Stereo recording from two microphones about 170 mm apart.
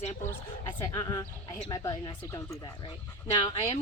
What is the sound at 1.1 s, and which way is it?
Speech, 30° left (ahead or behind).